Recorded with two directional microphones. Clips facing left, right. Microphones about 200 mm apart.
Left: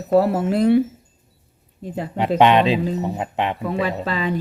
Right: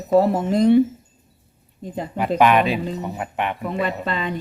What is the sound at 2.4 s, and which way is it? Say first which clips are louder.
Speech: left 2 dB; 25° left (ahead or behind).